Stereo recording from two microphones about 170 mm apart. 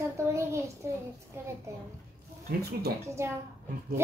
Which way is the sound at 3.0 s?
15° right (ahead or behind).